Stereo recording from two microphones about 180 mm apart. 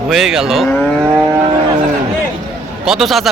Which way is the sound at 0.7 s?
10° left (ahead or behind).